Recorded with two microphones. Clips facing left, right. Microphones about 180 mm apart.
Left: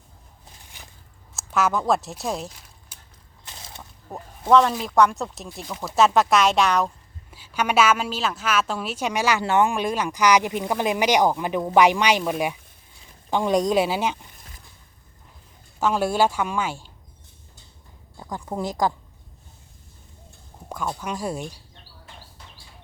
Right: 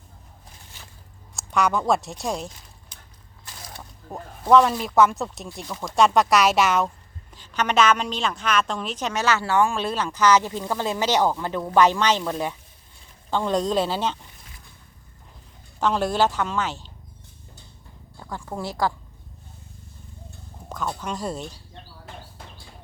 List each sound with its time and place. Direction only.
0.7 s a sound: 15° left (ahead or behind)
1.4 s speech: centre (ahead or behind)
3.4 s a sound: 25° left (ahead or behind)
4.1 s a woman's voice: centre (ahead or behind)
15.8 s a woman's voice: 10° left (ahead or behind)
18.2 s a woman's voice: 15° left (ahead or behind)
20.7 s a woman's voice: 10° left (ahead or behind)